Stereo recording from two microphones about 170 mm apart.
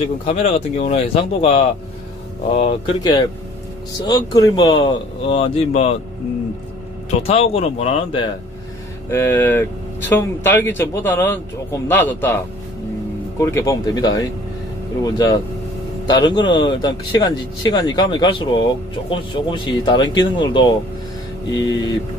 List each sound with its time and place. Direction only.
0.2 s speech: 40° left (ahead or behind)
4.1 s speech: 20° left (ahead or behind); by 5.9 s 35° left (ahead or behind)
7.1 s speech: 40° left (ahead or behind)
9.1 s speech: 10° left (ahead or behind)
13.4 s speech: 15° left (ahead or behind)